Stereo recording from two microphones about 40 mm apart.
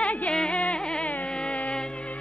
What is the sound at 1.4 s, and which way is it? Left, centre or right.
Music, left.